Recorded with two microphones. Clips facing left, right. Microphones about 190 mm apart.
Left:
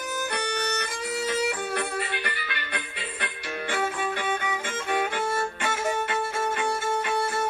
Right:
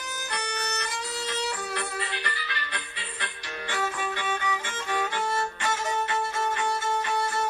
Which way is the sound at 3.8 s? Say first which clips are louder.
Left 3 dB; 55° left (ahead or behind).